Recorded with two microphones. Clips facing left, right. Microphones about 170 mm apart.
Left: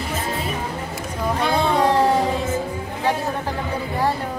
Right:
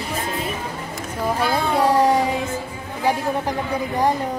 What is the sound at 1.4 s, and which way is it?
Speech, 5° right (ahead or behind).